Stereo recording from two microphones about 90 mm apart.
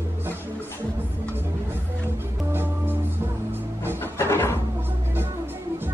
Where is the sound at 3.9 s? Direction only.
25° left (ahead or behind).